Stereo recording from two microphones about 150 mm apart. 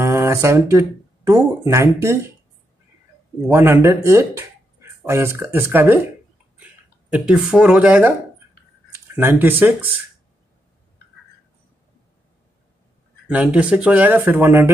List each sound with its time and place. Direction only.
0.0 s speech: 15° right (ahead or behind)
3.4 s speech: 15° right (ahead or behind)
13.3 s speech: 10° right (ahead or behind)